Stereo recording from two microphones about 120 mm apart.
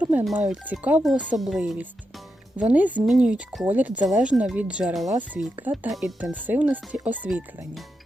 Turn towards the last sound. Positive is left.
turn(degrees=-15)  # may be behind; listen again after turning